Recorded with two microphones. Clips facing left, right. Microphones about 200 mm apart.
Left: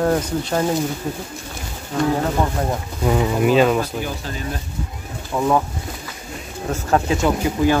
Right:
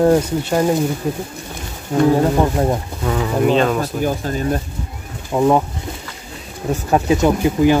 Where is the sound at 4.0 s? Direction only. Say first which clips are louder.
Right 8 dB; 45° right (ahead or behind).